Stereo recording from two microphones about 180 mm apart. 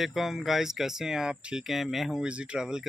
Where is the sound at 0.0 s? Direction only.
Centre (ahead or behind).